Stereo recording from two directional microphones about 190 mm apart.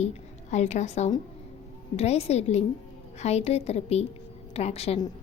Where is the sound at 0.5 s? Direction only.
35° left (ahead or behind).